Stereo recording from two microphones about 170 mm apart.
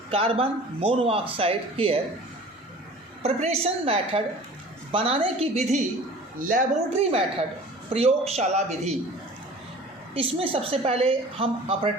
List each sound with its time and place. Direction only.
0.1 s speech: 35° right (ahead or behind)
3.2 s speech: 35° right (ahead or behind)
6.4 s speech: 50° right (ahead or behind)
10.2 s speech: 30° right (ahead or behind)